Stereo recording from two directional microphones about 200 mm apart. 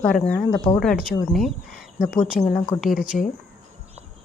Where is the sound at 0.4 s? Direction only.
20° left (ahead or behind).